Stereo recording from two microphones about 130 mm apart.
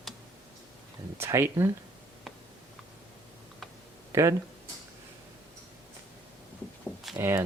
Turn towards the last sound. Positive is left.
turn(degrees=-20)  # may be behind; listen again after turning